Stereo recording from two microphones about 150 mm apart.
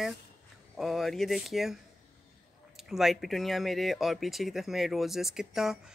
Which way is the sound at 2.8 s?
Centre (ahead or behind).